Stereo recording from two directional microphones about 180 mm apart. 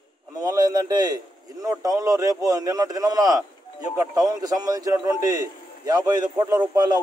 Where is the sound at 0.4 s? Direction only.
20° right (ahead or behind).